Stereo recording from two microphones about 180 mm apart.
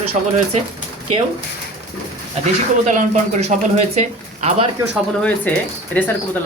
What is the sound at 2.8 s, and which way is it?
Speech, 40° right (ahead or behind).